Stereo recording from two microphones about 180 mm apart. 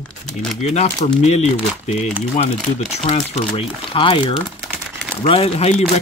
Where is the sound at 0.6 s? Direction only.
40° left (ahead or behind).